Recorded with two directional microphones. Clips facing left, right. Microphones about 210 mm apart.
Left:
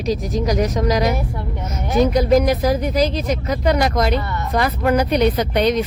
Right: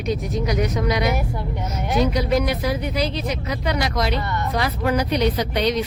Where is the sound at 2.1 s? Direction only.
45° left (ahead or behind).